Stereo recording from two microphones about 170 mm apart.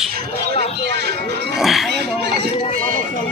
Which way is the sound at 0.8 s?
80° right.